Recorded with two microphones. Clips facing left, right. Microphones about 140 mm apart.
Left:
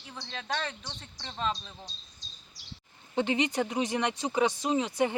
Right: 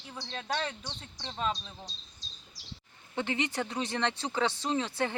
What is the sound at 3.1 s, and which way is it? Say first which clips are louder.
Speech: left 4 dB; 20° left (ahead or behind).